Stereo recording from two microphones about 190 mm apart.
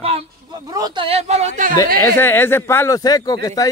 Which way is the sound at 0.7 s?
25° right (ahead or behind).